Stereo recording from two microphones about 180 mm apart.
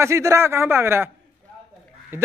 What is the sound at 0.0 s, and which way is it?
A man's voice, 15° right (ahead or behind).